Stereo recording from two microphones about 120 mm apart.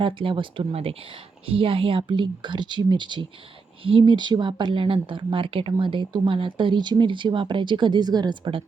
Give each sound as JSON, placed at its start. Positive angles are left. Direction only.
{"t": 0.0, "sound": "speech", "side_deg": -45}